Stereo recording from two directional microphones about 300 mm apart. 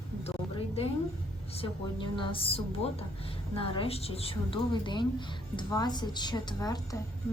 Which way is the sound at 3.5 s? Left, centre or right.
Centre.